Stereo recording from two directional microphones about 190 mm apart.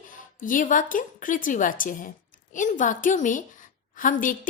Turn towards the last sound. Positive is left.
turn(degrees=45)  # may be behind; listen again after turning